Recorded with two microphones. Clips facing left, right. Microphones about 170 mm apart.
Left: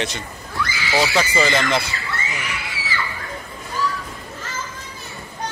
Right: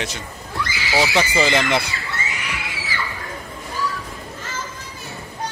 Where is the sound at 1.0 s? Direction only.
15° right (ahead or behind).